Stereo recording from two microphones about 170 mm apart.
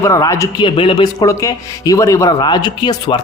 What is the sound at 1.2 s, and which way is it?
Speech, 20° left (ahead or behind).